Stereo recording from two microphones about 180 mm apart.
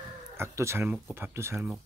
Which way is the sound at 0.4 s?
15° right (ahead or behind).